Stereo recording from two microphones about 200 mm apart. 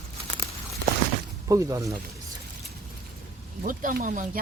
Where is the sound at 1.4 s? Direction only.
15° right (ahead or behind).